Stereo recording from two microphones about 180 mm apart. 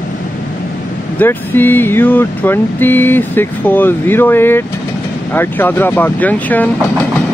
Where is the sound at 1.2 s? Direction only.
10° left (ahead or behind).